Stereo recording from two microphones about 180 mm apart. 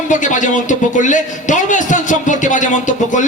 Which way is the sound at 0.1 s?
45° left (ahead or behind).